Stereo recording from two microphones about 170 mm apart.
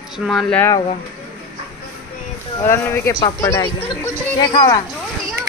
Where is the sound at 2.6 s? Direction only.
15° left (ahead or behind).